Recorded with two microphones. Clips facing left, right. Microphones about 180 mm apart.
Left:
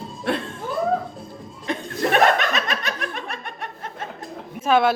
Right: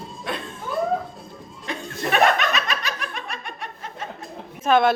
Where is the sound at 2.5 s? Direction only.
50° left (ahead or behind).